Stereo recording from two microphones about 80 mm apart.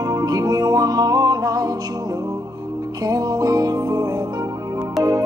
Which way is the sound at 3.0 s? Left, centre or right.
Right.